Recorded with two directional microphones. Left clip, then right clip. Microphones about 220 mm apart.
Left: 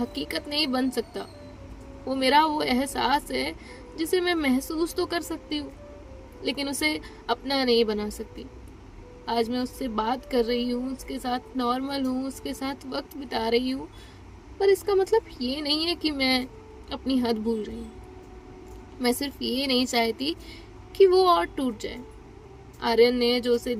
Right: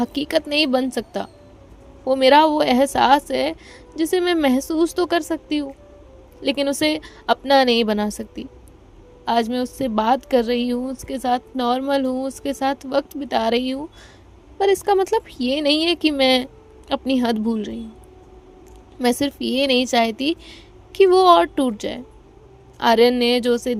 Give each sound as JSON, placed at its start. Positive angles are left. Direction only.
{"t": 0.0, "sound": "a woman's voice", "side_deg": -40}
{"t": 19.0, "sound": "a woman's voice", "side_deg": -40}